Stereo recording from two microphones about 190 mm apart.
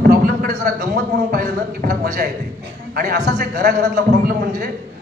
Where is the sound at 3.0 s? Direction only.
50° right (ahead or behind).